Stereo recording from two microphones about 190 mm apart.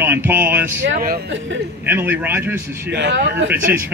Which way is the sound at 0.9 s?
50° right (ahead or behind).